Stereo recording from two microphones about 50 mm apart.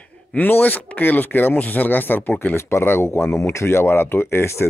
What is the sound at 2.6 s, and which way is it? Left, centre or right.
Speech, left.